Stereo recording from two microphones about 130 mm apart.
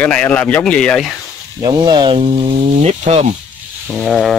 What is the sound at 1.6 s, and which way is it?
Speech, 35° right (ahead or behind).